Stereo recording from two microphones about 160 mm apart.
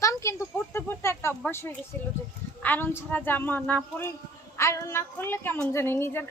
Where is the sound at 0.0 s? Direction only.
20° left (ahead or behind).